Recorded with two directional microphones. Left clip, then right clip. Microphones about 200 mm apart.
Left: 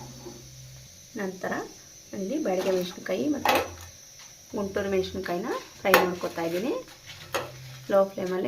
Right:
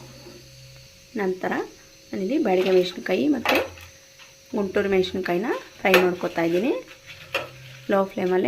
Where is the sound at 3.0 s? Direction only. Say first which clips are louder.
Right 5 dB; 40° right (ahead or behind).